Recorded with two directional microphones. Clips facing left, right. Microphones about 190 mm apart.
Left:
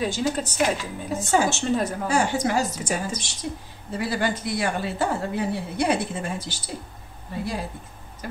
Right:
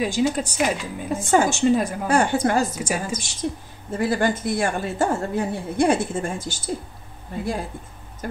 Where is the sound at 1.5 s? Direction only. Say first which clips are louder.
Right 5 dB; 10° right (ahead or behind).